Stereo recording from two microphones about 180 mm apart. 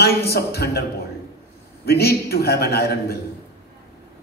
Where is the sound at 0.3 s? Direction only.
60° left (ahead or behind).